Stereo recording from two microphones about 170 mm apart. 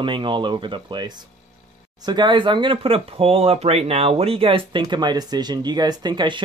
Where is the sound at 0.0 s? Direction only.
30° right (ahead or behind).